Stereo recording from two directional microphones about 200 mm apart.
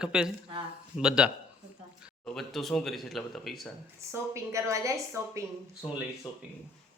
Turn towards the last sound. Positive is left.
turn(degrees=-5)  # may be behind; listen again after turning